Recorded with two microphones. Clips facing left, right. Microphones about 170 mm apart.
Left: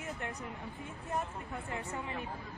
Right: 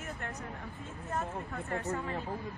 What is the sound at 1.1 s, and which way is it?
Speech, 15° left (ahead or behind).